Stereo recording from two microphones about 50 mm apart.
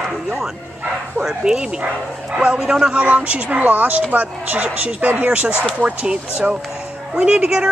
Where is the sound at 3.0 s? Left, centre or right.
Right.